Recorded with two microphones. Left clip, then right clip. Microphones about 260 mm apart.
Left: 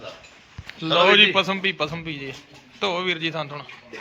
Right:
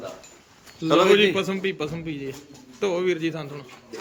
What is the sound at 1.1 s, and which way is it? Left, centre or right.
A man's voice, centre.